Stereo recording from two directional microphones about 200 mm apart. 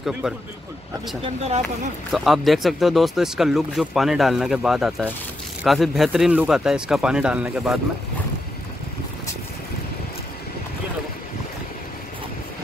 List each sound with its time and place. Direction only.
0.2 s speech: 5° right (ahead or behind)
1.2 s speech: 30° right (ahead or behind)
2.1 s speech: centre (ahead or behind)